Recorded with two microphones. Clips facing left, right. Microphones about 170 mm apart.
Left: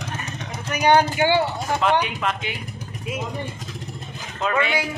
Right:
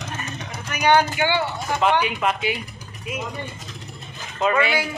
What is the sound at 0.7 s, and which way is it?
Speech, 35° left (ahead or behind).